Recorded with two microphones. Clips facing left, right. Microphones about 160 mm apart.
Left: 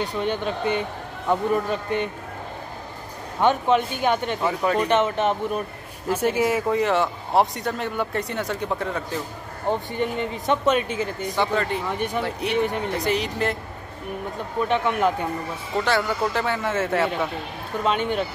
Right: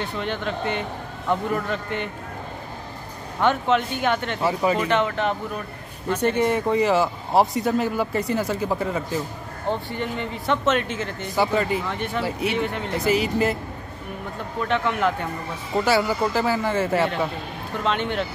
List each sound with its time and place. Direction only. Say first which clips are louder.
0.0 s speech: left 2 dB; 15° left (ahead or behind)
3.3 s speech: left 1 dB; 15° left (ahead or behind)
4.4 s speech: right 1 dB; 5° right (ahead or behind)
4.8 s speech: left 1 dB; 20° left (ahead or behind)
6.0 s speech: even; 5° left (ahead or behind)
9.7 s speech: left 2 dB; 15° left (ahead or behind)
11.3 s speech: right 3 dB; 5° right (ahead or behind)
11.9 s speech: left 2 dB; 15° left (ahead or behind)
12.2 s speech: even; 5° right (ahead or behind)
14.6 s speech: left 1 dB; 15° left (ahead or behind)
15.7 s speech: right 2 dB; 5° right (ahead or behind)
17.8 s speech: left 1 dB; 10° left (ahead or behind)